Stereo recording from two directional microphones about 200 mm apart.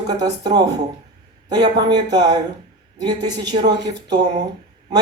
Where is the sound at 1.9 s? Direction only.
20° right (ahead or behind).